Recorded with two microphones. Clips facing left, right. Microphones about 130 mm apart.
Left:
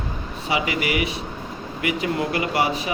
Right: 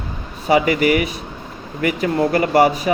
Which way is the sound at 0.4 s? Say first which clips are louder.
Right 9 dB; 45° right (ahead or behind).